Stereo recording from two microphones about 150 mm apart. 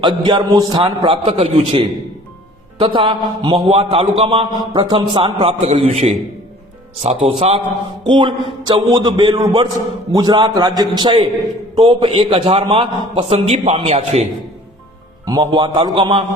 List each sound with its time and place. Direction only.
0.0 s a man's voice: 30° right (ahead or behind)
5.5 s a man's voice: 50° right (ahead or behind)
8.1 s a man's voice: 30° right (ahead or behind); by 14.3 s 45° right (ahead or behind)
15.3 s a man's voice: 30° right (ahead or behind)